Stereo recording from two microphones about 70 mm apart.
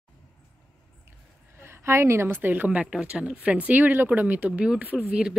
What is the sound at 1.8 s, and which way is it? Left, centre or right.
Speech, right.